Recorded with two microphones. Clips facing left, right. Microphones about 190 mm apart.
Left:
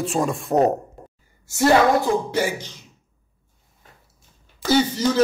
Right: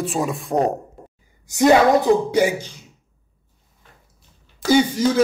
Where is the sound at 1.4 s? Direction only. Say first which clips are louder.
Right 2 dB; 15° right (ahead or behind).